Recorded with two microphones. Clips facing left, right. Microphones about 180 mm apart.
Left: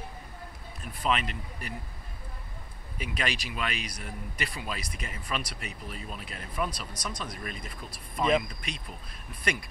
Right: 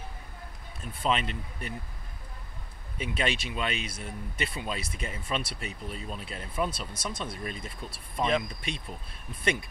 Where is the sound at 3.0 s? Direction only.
25° right (ahead or behind).